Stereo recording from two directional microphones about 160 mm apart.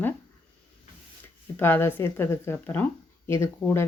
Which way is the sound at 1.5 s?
15° left (ahead or behind).